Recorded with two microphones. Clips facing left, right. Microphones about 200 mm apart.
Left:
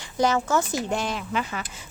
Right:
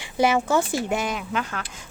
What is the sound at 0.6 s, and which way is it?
Speech, 30° right (ahead or behind).